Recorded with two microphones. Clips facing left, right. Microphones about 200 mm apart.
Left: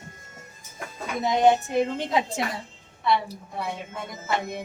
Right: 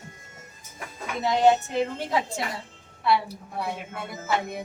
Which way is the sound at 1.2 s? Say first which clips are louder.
Even; 15° left (ahead or behind).